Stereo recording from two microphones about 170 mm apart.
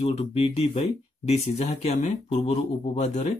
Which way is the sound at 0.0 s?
40° left (ahead or behind).